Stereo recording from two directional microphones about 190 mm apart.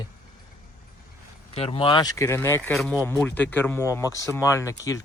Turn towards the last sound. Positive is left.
turn(degrees=15)  # may be behind; listen again after turning